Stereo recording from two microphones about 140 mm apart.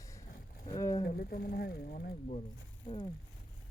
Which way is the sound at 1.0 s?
90° left.